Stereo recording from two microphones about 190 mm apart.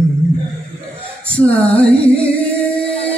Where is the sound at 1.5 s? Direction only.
10° left (ahead or behind).